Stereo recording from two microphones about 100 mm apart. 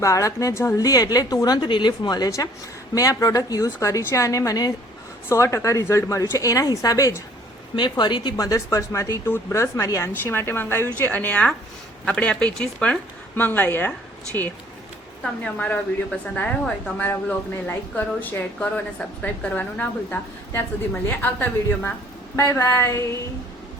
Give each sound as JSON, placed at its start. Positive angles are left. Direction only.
{"t": 0.0, "sound": "a woman's voice", "side_deg": 30}
{"t": 7.8, "sound": "a woman's voice", "side_deg": 50}
{"t": 15.2, "sound": "speech", "side_deg": 10}
{"t": 17.0, "sound": "a woman's voice", "side_deg": 15}
{"t": 22.4, "sound": "a woman's voice", "side_deg": 30}